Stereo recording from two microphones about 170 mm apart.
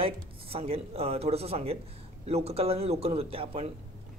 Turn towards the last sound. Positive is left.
turn(degrees=-35)  # may be behind; listen again after turning